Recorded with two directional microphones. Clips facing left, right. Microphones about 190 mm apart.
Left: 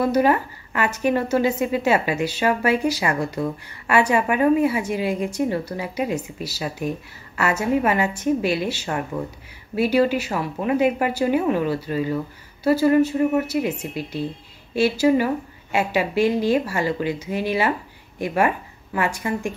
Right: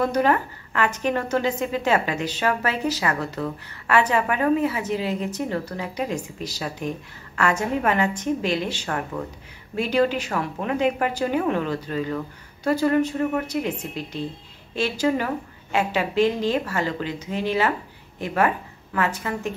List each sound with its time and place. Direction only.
0.0 s a woman's voice: 10° left (ahead or behind)
8.8 s speech: 20° left (ahead or behind)
9.8 s a woman's voice: 10° left (ahead or behind)